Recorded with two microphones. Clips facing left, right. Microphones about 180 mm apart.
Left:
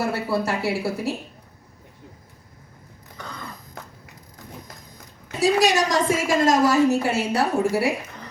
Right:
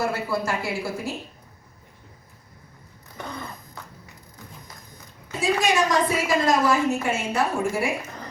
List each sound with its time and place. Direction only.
0.0 s a woman's voice: 35° left (ahead or behind)
5.4 s a woman's voice: 40° left (ahead or behind)